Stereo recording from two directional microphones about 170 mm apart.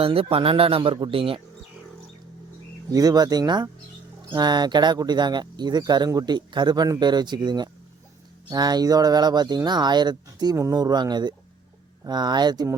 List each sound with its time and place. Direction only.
0.0 s speech: 35° right (ahead or behind)
2.9 s speech: 20° right (ahead or behind)